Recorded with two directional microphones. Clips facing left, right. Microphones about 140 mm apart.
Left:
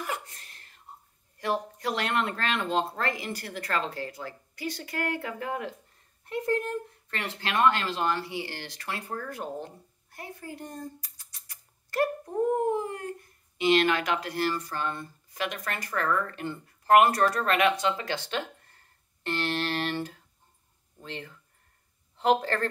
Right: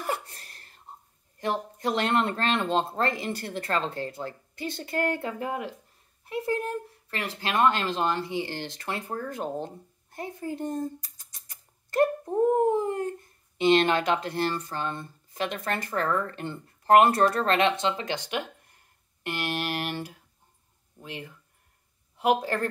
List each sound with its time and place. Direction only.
0.0 s a sound: 35° right (ahead or behind)
1.4 s speech: 20° right (ahead or behind)
6.2 s speech: 5° right (ahead or behind)